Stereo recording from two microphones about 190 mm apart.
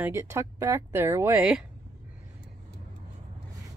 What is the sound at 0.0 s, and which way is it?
Speech, 15° right (ahead or behind).